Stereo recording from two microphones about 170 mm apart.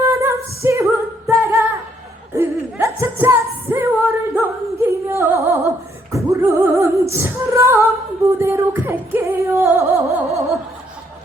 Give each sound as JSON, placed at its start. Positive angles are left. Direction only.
{"t": 0.0, "sound": "singing", "side_deg": -15}
{"t": 2.3, "sound": "music", "side_deg": -15}
{"t": 8.4, "sound": "singing", "side_deg": -15}